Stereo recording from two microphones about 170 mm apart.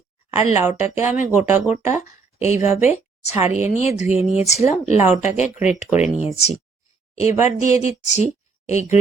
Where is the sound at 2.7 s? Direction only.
40° left (ahead or behind).